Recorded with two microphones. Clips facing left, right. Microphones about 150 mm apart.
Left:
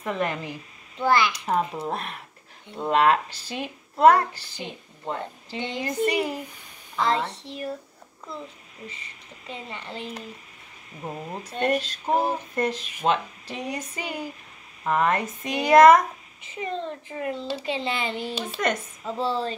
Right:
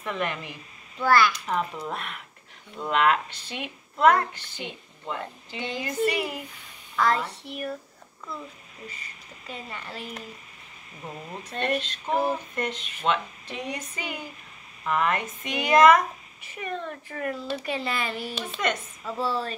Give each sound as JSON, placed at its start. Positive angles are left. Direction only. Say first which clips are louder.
{"t": 0.0, "sound": "speech", "louder": "left 3 dB", "side_deg": 35}
{"t": 0.9, "sound": "a child's voice", "louder": "right 1 dB", "side_deg": 20}
{"t": 1.8, "sound": "speech", "louder": "left 3 dB", "side_deg": 35}
{"t": 5.6, "sound": "a child's voice", "louder": "left 2 dB", "side_deg": 20}
{"t": 5.9, "sound": "a child's voice", "louder": "left 2 dB", "side_deg": 30}
{"t": 8.8, "sound": "a child's voice", "louder": "left 1 dB", "side_deg": 25}
{"t": 16.5, "sound": "a child's voice", "louder": "left 3 dB", "side_deg": 25}